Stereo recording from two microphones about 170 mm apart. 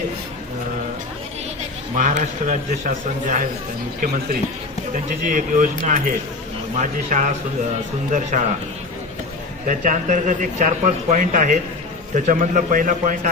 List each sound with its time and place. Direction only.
2.0 s a man's voice: 50° right (ahead or behind)
6.7 s a man's voice: 45° right (ahead or behind)
9.6 s a man's voice: 50° right (ahead or behind)